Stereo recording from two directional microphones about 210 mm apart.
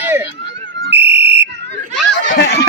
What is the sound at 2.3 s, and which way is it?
Snicker, 50° left (ahead or behind).